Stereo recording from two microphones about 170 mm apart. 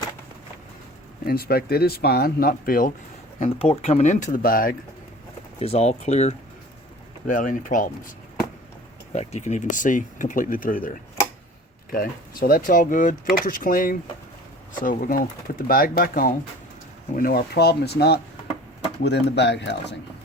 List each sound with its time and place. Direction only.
1.2 s speech: 60° left (ahead or behind)
3.4 s speech: 40° left (ahead or behind); by 4.8 s 60° left (ahead or behind)
5.5 s speech: 35° left (ahead or behind)
9.1 s speech: 40° left (ahead or behind); by 18.2 s 70° left (ahead or behind)
19.0 s speech: 80° left